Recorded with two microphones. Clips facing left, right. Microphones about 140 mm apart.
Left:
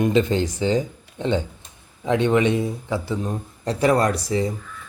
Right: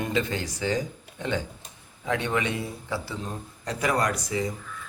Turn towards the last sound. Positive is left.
turn(degrees=30)  # may be behind; listen again after turning